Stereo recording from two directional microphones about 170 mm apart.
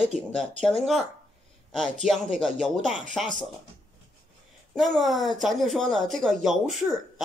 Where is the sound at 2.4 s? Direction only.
5° left (ahead or behind).